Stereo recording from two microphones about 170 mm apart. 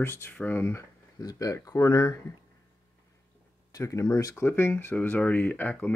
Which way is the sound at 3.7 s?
20° left (ahead or behind).